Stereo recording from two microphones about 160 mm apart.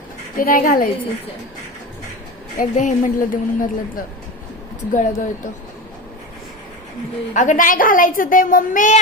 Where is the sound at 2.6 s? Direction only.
55° left (ahead or behind).